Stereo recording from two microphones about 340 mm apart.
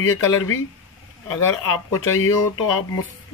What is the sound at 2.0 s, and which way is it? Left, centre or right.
Speech, left.